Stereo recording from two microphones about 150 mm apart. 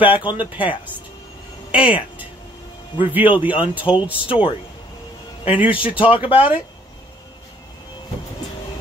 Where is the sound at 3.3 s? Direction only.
35° left (ahead or behind).